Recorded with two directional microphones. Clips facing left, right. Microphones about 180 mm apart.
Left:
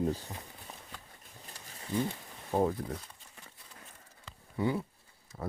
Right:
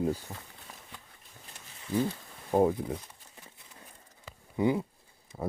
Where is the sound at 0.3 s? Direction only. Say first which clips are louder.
Even; 20° right (ahead or behind).